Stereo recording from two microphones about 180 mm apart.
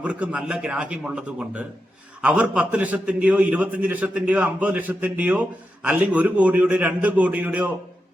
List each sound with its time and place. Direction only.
0.0 s a man's voice: 10° right (ahead or behind)